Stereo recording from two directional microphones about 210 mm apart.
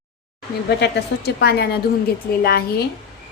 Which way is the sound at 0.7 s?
50° left (ahead or behind).